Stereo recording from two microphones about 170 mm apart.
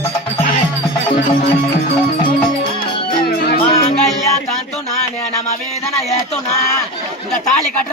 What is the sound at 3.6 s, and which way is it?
Music, 40° left (ahead or behind).